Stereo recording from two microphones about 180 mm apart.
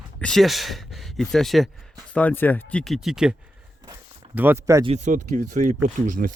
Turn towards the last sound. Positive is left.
turn(degrees=-50)  # may be behind; listen again after turning